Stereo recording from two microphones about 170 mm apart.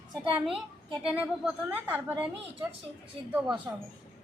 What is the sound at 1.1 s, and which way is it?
Speech, 5° right (ahead or behind).